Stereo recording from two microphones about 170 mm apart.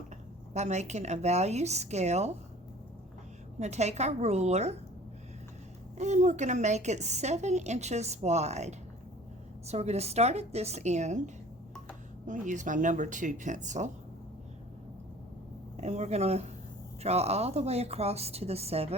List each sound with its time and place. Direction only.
0.5 s a woman's voice: 40° right (ahead or behind)
3.6 s a woman's voice: 40° right (ahead or behind)
6.0 s a woman's voice: 45° right (ahead or behind)
12.2 s speech: 50° right (ahead or behind)
15.8 s a woman's voice: 40° right (ahead or behind)